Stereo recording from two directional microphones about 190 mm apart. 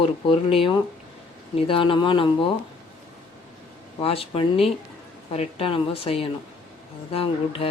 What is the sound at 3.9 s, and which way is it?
Speech, 30° left (ahead or behind).